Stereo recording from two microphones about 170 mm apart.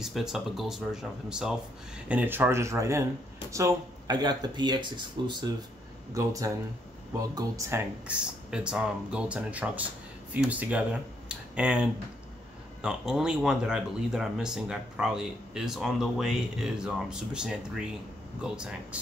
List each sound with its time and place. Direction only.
0.0 s speech: 5° right (ahead or behind); by 7.8 s 20° right (ahead or behind)
8.1 s speech: 5° right (ahead or behind)